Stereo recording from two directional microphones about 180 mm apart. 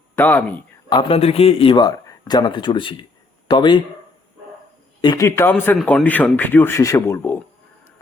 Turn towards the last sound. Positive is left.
turn(degrees=10)  # may be behind; listen again after turning